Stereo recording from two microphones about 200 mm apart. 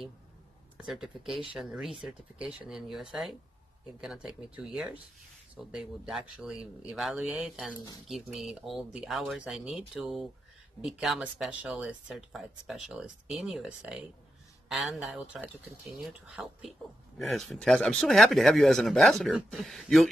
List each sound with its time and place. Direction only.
0.7 s speech: 5° right (ahead or behind)